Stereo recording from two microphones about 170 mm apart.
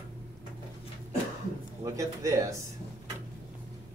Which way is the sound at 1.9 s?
20° right (ahead or behind).